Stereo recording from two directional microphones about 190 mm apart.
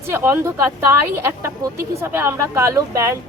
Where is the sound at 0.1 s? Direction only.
10° right (ahead or behind).